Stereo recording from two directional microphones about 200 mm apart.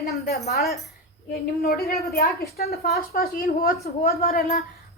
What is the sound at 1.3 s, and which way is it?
A woman's voice, 50° left (ahead or behind).